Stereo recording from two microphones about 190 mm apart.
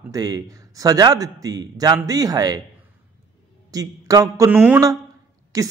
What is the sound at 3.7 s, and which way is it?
Speech, 20° right (ahead or behind).